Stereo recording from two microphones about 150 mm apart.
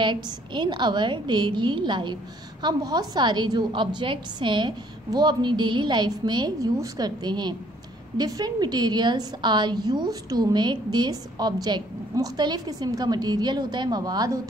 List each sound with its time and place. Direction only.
0.0 s a woman's voice: 30° right (ahead or behind)